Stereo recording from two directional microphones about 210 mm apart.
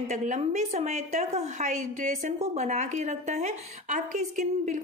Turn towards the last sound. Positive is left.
turn(degrees=-35)  # may be behind; listen again after turning